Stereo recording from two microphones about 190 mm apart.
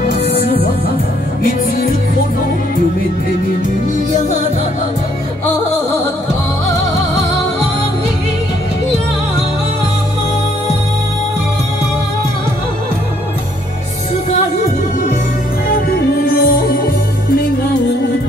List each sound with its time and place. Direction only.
0.2 s music: 65° left (ahead or behind)
4.1 s music: 40° left (ahead or behind)
14.3 s music: 40° left (ahead or behind)
15.7 s music: 50° left (ahead or behind)